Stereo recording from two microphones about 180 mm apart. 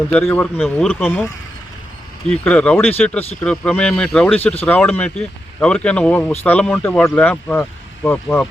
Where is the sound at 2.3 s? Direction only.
5° left (ahead or behind).